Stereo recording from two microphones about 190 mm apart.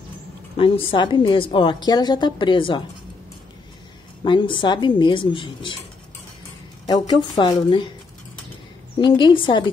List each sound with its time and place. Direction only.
0.6 s a woman's voice: 30° left (ahead or behind)
4.2 s a woman's voice: 25° left (ahead or behind)
6.9 s a woman's voice: 25° left (ahead or behind)
8.9 s a woman's voice: 25° left (ahead or behind)